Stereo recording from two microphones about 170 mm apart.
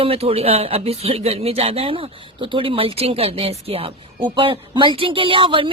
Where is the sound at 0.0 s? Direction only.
35° right (ahead or behind).